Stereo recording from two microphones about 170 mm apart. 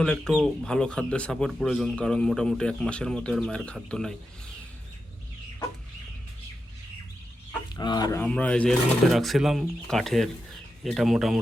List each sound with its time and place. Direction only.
0.0 s speech: 5° left (ahead or behind)
7.8 s speech: 25° left (ahead or behind)
8.2 s speech: 10° left (ahead or behind)